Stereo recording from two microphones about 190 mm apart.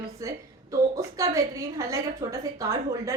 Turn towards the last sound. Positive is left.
turn(degrees=-15)  # may be behind; listen again after turning